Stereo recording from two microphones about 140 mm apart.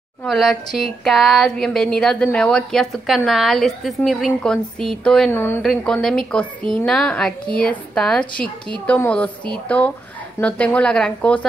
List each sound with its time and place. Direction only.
0.2 s a woman's voice: centre (ahead or behind)
5.3 s a woman's voice: 15° left (ahead or behind)
5.6 s a woman's voice: 5° left (ahead or behind)